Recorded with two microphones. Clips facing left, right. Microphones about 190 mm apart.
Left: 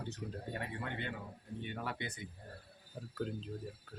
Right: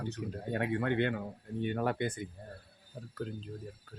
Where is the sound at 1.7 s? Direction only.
50° right (ahead or behind).